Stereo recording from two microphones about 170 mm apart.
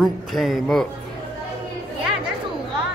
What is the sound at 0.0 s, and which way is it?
Speech, centre (ahead or behind).